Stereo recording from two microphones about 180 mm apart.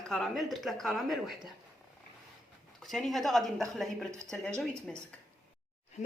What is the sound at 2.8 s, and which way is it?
Speech, centre (ahead or behind).